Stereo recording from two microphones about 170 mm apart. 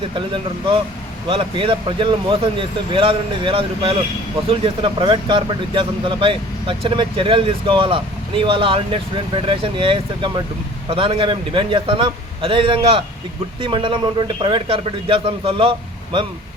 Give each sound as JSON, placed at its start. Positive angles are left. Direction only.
{"t": 1.3, "sound": "speech", "side_deg": -30}